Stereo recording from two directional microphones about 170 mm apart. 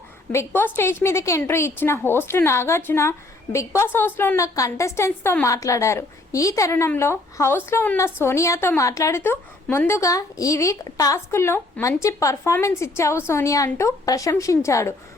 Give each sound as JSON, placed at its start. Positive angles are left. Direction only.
{"t": 0.3, "sound": "a woman's voice", "side_deg": 15}